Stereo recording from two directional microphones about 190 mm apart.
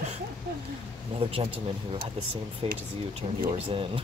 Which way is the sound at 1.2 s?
30° right (ahead or behind).